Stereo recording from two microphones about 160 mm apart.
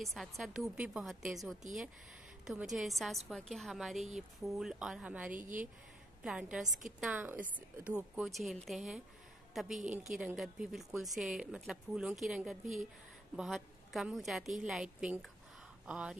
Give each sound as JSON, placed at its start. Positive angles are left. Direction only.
{"t": 0.0, "sound": "a woman's voice", "side_deg": 0}
{"t": 5.3, "sound": "speech", "side_deg": -55}
{"t": 6.2, "sound": "a woman's voice", "side_deg": -5}